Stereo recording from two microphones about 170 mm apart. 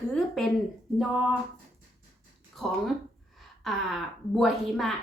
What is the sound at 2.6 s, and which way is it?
A woman's voice, centre (ahead or behind).